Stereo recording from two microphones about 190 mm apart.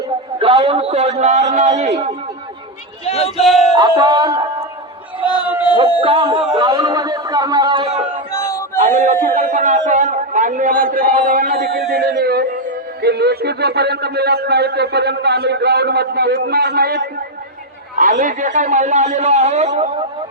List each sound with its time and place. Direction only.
0.3 s a man's voice: 30° right (ahead or behind)
3.0 s speech: 30° left (ahead or behind)
3.3 s speech: centre (ahead or behind)
3.8 s speech: 20° right (ahead or behind)
5.7 s speech: 30° right (ahead or behind)
8.3 s a sound: 15° left (ahead or behind)
8.8 s a man's voice: 40° right (ahead or behind); by 17.1 s 55° right (ahead or behind)
18.0 s a man's voice: 45° right (ahead or behind)